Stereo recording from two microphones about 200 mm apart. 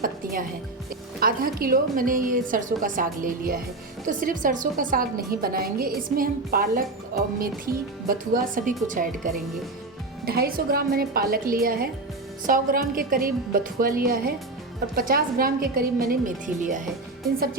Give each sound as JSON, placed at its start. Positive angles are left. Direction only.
{"t": 0.0, "sound": "a woman's voice", "side_deg": -45}